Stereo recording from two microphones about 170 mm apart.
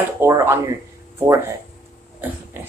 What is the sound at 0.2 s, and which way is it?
Speech, 15° right (ahead or behind).